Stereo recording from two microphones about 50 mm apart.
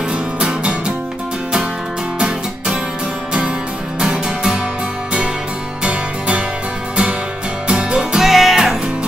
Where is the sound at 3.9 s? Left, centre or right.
Centre.